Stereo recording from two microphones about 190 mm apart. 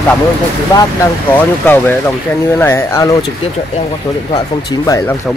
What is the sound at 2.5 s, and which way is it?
Speech, 15° left (ahead or behind).